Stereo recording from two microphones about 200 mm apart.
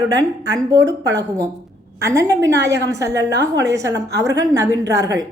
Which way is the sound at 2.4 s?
60° right (ahead or behind).